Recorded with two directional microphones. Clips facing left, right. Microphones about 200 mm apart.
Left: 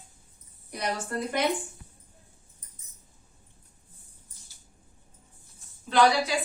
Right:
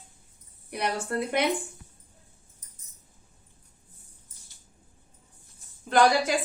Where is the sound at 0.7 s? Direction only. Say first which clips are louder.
Right 2 dB; 60° right (ahead or behind).